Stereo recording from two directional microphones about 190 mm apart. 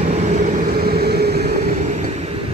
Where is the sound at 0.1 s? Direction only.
40° right (ahead or behind); by 1.4 s 55° right (ahead or behind).